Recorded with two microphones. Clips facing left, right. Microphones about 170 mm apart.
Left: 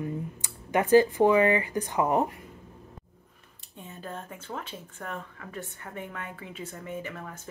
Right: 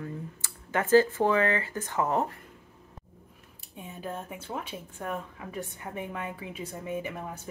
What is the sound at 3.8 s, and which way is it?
Speech, 10° right (ahead or behind).